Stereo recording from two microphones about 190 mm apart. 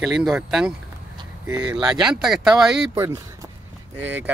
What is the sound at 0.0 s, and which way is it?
Speech, centre (ahead or behind).